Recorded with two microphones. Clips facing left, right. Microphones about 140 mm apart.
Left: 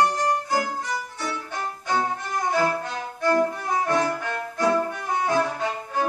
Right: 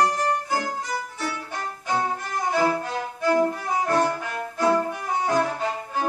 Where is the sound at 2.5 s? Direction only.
5° right (ahead or behind).